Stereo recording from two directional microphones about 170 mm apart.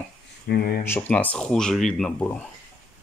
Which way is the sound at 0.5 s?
65° left (ahead or behind).